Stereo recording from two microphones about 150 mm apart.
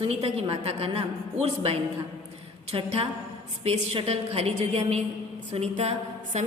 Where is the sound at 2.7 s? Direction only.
40° right (ahead or behind).